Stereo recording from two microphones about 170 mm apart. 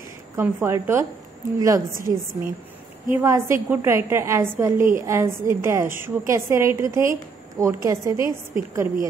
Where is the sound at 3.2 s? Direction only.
15° right (ahead or behind).